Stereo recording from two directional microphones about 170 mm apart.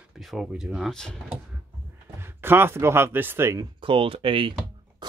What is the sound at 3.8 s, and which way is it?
Speech, 30° right (ahead or behind).